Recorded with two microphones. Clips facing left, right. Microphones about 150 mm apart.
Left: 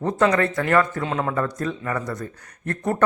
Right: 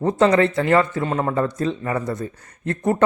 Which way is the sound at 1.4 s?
25° right (ahead or behind).